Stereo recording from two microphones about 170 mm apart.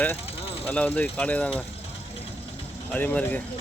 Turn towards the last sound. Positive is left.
turn(degrees=10)  # may be behind; listen again after turning